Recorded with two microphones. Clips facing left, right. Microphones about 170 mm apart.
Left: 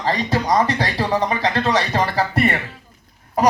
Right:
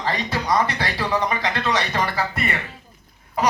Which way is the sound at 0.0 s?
35° left (ahead or behind).